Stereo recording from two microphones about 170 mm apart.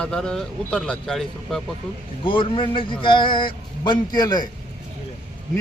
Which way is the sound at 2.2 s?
30° left (ahead or behind).